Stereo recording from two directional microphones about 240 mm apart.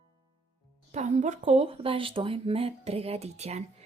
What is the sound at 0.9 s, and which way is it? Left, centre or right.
Speech, right.